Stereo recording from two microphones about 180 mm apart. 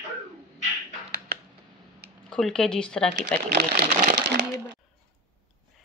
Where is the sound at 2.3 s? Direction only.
5° left (ahead or behind).